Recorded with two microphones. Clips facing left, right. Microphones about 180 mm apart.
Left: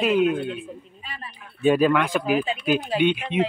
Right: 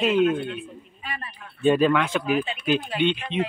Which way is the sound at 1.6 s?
5° left (ahead or behind).